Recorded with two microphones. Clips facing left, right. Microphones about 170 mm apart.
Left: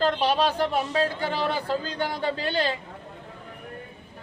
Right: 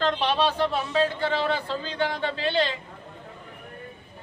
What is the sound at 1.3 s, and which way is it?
Speech, 40° left (ahead or behind).